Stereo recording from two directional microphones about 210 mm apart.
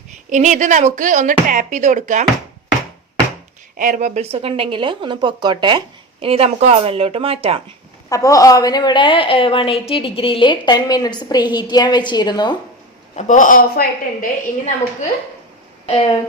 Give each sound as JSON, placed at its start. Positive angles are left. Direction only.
{"t": 0.3, "sound": "speech", "side_deg": -35}
{"t": 3.8, "sound": "speech", "side_deg": -40}
{"t": 8.1, "sound": "a woman's voice", "side_deg": 15}
{"t": 13.1, "sound": "a woman's voice", "side_deg": 35}
{"t": 15.9, "sound": "a woman's voice", "side_deg": 30}